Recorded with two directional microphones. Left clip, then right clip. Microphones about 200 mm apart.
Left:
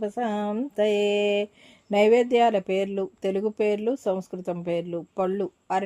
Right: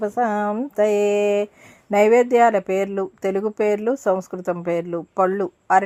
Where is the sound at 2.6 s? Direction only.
40° right (ahead or behind).